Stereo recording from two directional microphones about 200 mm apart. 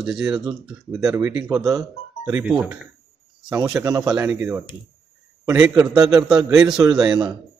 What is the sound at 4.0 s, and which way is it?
A man's voice, 5° right (ahead or behind).